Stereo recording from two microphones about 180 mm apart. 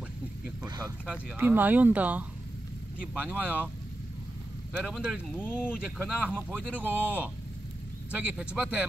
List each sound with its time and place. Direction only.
0.7 s speech: 20° right (ahead or behind)
1.0 s speech: 10° right (ahead or behind)
4.7 s speech: centre (ahead or behind)
8.1 s speech: 5° right (ahead or behind)